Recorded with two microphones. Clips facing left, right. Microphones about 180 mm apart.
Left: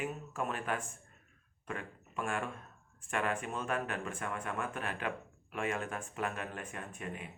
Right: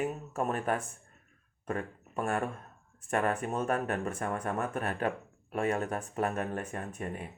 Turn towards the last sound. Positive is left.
turn(degrees=-40)  # may be behind; listen again after turning